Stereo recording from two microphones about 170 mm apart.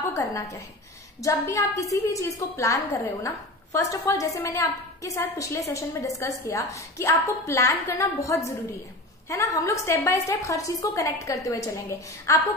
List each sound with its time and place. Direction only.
0.1 s a woman's voice: 20° left (ahead or behind)